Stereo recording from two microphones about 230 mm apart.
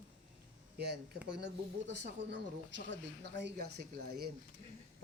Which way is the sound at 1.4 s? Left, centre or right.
Right.